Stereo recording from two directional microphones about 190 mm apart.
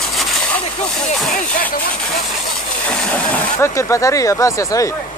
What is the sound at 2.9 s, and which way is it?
Speech, 5° left (ahead or behind).